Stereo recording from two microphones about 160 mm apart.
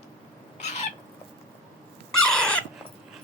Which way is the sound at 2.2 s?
5° left (ahead or behind).